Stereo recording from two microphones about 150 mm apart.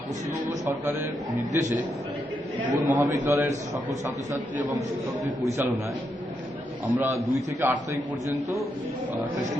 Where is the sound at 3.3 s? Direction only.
20° right (ahead or behind).